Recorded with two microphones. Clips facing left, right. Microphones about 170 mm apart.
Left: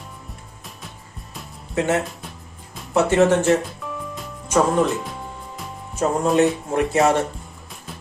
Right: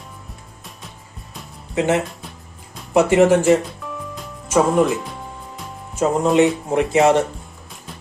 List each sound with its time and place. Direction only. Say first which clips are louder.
1.7 s speech: right 2 dB; 20° right (ahead or behind)
3.7 s music: even; centre (ahead or behind)
6.0 s speech: right 2 dB; 20° right (ahead or behind)